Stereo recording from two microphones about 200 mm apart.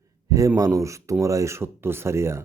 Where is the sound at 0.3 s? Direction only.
15° right (ahead or behind).